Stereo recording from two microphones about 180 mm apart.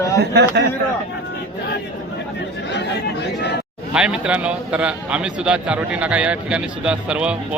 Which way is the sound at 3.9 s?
5° right (ahead or behind).